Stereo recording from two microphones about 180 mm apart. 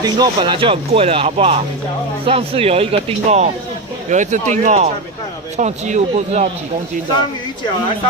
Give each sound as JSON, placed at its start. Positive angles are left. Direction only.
{"t": 0.0, "sound": "speech", "side_deg": -25}